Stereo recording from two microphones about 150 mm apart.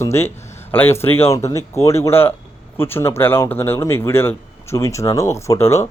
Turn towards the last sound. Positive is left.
turn(degrees=20)  # may be behind; listen again after turning